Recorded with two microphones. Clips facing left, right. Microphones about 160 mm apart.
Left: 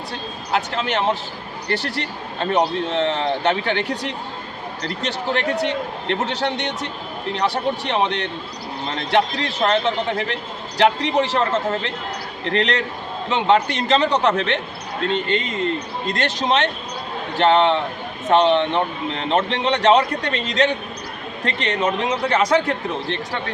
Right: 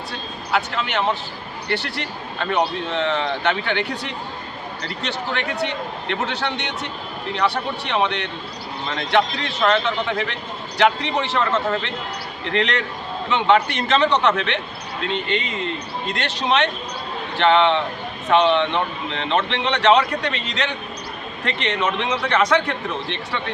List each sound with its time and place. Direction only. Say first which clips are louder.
0.5 s a man's voice: left 1 dB; 35° left (ahead or behind)